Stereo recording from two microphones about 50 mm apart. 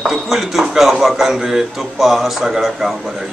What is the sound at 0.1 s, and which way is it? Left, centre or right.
A man's voice, centre.